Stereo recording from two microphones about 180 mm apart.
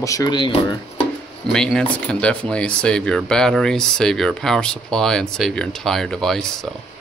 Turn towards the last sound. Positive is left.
turn(degrees=0)  # may be behind; listen again after turning